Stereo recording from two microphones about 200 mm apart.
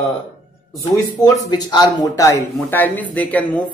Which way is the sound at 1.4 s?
20° left (ahead or behind).